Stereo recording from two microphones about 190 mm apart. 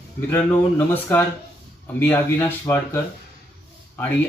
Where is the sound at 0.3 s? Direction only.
10° left (ahead or behind).